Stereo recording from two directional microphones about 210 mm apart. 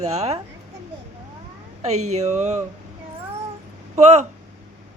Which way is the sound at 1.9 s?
90° right.